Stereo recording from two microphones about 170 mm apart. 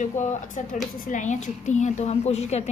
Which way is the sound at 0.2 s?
45° left (ahead or behind).